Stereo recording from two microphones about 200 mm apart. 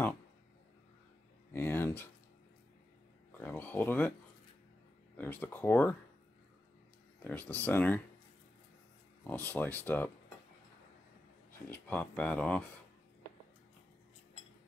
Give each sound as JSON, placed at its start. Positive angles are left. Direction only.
{"t": 1.5, "sound": "speech", "side_deg": 10}
{"t": 3.3, "sound": "speech", "side_deg": 10}
{"t": 5.1, "sound": "speech", "side_deg": 10}
{"t": 7.2, "sound": "speech", "side_deg": 10}
{"t": 9.3, "sound": "speech", "side_deg": 10}
{"t": 11.7, "sound": "speech", "side_deg": 10}